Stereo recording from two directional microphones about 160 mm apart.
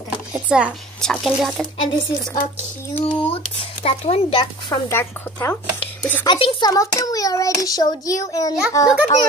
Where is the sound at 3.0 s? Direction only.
35° left (ahead or behind).